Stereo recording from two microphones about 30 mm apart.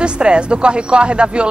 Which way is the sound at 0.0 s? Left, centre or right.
Right.